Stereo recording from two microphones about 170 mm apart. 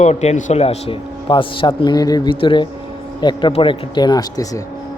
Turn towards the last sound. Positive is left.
turn(degrees=20)  # may be behind; listen again after turning